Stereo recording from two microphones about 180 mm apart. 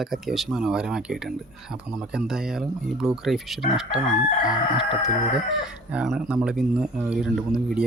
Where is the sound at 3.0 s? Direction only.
Centre (ahead or behind).